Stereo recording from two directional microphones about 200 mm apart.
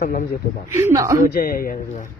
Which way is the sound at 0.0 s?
45° left (ahead or behind).